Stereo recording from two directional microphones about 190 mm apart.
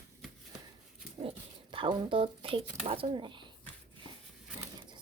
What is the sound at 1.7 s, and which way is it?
Speech, 25° right (ahead or behind).